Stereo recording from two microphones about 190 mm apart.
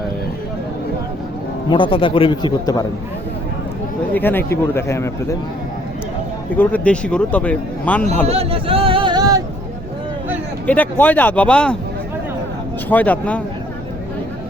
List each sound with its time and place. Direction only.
1.7 s a man's voice: 25° left (ahead or behind)
4.1 s speech: 10° left (ahead or behind)
6.6 s speech: 10° left (ahead or behind)
8.3 s a sound: 30° right (ahead or behind)
10.7 s speech: 10° left (ahead or behind)
12.9 s speech: 10° left (ahead or behind)